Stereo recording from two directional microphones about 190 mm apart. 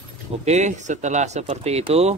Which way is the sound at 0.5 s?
40° right (ahead or behind).